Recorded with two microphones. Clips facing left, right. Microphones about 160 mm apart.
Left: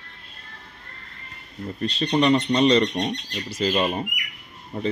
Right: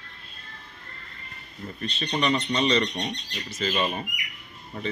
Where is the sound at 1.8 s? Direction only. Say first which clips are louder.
Left 6 dB; 35° left (ahead or behind).